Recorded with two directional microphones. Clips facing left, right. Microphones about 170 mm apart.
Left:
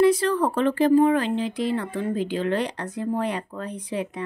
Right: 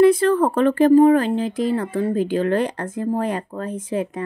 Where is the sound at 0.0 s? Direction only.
55° right (ahead or behind).